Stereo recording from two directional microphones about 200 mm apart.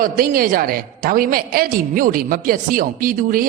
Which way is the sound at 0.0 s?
45° right (ahead or behind).